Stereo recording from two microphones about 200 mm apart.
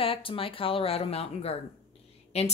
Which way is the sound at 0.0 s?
25° left (ahead or behind).